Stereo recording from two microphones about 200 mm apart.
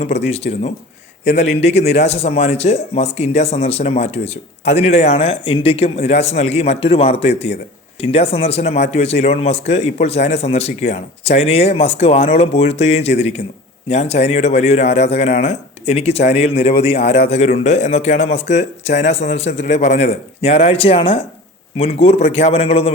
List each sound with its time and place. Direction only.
0.3 s a man's voice: 30° left (ahead or behind)